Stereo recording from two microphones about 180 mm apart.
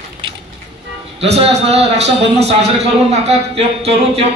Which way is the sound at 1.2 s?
35° right (ahead or behind).